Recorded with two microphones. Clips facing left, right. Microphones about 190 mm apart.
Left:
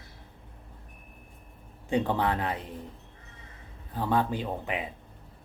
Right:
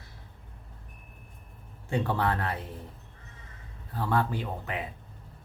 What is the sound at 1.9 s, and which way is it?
Speech, 20° left (ahead or behind).